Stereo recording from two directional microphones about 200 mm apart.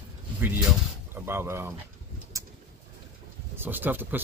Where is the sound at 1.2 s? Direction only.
10° right (ahead or behind).